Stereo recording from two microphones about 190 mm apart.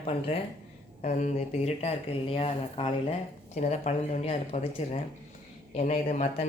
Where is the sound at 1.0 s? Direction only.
35° left (ahead or behind).